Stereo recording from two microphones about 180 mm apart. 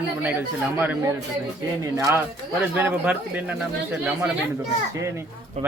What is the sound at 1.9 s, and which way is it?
Speech, 20° right (ahead or behind).